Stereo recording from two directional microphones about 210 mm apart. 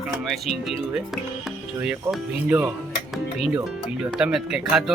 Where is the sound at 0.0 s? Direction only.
Centre (ahead or behind).